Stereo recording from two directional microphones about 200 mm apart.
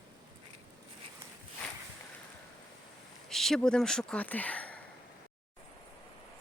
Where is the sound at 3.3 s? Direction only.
Centre (ahead or behind).